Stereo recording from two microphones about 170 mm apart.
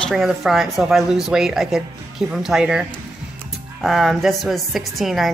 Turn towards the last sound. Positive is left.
turn(degrees=0)  # may be behind; listen again after turning